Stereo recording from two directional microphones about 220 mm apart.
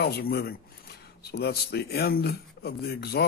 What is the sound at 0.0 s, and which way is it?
Speech, 45° left (ahead or behind).